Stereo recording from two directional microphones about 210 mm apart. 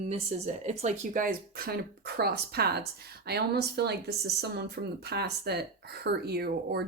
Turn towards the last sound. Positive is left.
turn(degrees=-50)  # may be behind; listen again after turning